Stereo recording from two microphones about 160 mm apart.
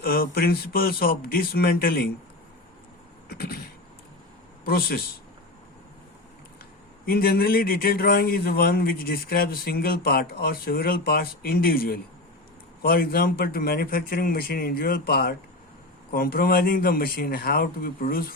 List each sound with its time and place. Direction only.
0.0 s speech: 70° left (ahead or behind)
3.2 s vehicle: 75° left (ahead or behind)
4.6 s speech: 70° left (ahead or behind)
7.0 s speech: 70° left (ahead or behind)